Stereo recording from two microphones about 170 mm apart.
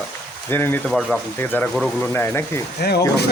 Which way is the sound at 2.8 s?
70° left (ahead or behind).